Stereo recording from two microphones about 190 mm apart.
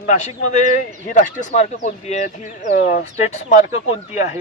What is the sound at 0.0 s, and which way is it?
A woman's voice, 40° left (ahead or behind).